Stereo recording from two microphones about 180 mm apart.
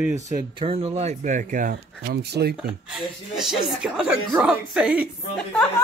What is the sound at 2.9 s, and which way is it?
A woman's voice, 5° right (ahead or behind).